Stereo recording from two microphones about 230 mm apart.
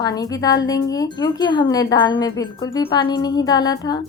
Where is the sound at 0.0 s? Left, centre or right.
Centre.